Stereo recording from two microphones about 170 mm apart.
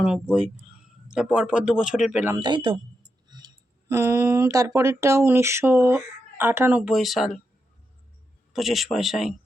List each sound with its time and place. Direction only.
0.0 s speech: 5° right (ahead or behind)
2.4 s speech: 30° right (ahead or behind); by 7.3 s centre (ahead or behind)
8.5 s speech: centre (ahead or behind)